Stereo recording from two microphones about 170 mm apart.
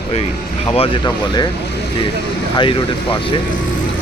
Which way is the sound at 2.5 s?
30° left (ahead or behind).